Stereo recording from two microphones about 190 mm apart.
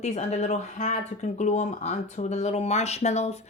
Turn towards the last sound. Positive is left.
turn(degrees=35)  # may be behind; listen again after turning